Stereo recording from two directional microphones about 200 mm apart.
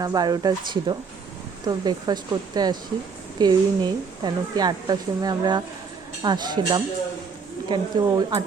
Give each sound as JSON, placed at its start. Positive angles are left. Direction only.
{"t": 0.0, "sound": "a woman's voice", "side_deg": -20}